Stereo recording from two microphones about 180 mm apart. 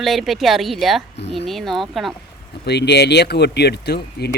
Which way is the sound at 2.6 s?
70° left (ahead or behind).